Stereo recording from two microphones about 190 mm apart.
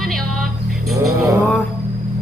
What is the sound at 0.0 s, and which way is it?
Music, centre (ahead or behind).